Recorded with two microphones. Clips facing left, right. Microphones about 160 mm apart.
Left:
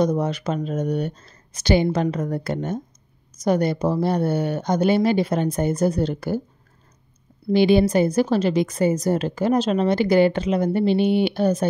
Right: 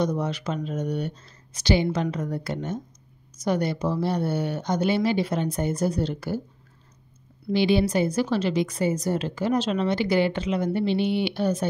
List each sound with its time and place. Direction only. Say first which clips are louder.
0.0 s a woman's voice: left 5 dB; 45° left (ahead or behind)
7.5 s a woman's voice: left 5 dB; 50° left (ahead or behind)